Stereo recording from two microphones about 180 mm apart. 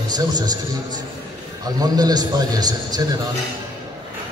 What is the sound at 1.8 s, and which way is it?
A man's voice, 20° right (ahead or behind).